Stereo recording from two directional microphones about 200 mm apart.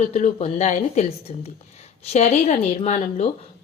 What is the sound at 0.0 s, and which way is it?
A woman's voice, 35° left (ahead or behind).